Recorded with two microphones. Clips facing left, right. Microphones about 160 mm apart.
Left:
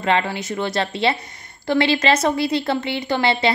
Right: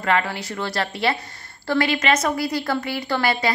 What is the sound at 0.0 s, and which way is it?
A woman's voice, 20° left (ahead or behind).